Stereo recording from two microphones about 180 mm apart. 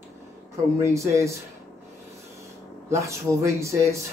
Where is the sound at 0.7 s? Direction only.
15° right (ahead or behind).